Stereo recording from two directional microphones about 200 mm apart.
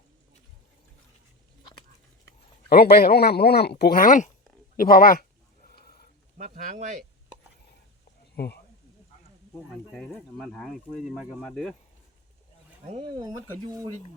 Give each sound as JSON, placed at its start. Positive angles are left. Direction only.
{"t": 2.6, "sound": "speech", "side_deg": 50}
{"t": 5.8, "sound": "a sound", "side_deg": 50}
{"t": 6.3, "sound": "speech", "side_deg": -35}
{"t": 9.9, "sound": "speech", "side_deg": 5}
{"t": 13.0, "sound": "speech", "side_deg": -20}